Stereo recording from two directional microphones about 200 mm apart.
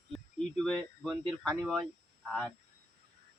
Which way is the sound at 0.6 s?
Centre (ahead or behind).